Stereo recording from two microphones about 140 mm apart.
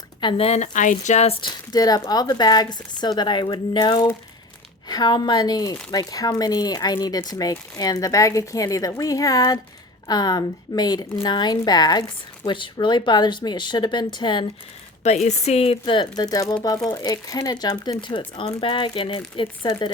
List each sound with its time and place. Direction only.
0.2 s speech: 40° left (ahead or behind)
1.4 s speech: 30° left (ahead or behind)
15.0 s speech: 55° left (ahead or behind); by 19.9 s 35° left (ahead or behind)